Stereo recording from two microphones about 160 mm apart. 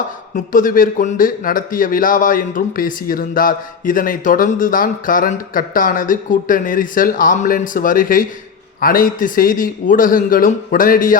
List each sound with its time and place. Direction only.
0.3 s a man's voice: 60° left (ahead or behind)